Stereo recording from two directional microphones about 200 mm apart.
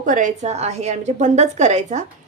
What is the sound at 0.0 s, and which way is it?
A woman's voice, 40° right (ahead or behind).